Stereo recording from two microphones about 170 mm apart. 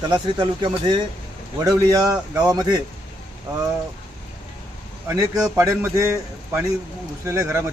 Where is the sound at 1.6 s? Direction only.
20° right (ahead or behind).